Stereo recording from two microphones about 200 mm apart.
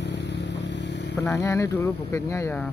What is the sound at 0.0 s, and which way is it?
Vehicle, 60° left (ahead or behind).